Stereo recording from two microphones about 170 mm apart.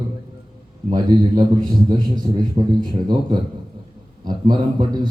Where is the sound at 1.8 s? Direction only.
25° right (ahead or behind).